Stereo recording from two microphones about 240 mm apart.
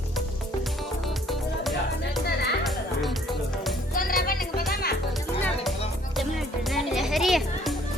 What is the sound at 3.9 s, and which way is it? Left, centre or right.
Music, left.